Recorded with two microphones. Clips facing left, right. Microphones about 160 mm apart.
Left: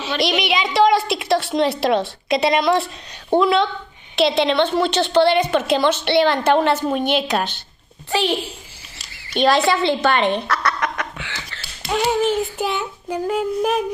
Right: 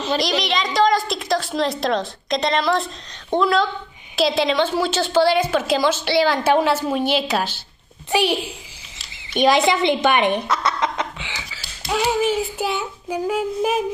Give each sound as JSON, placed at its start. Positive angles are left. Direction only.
{"t": 0.2, "sound": "a woman's voice", "side_deg": 5}
{"t": 11.5, "sound": "child singing", "side_deg": -5}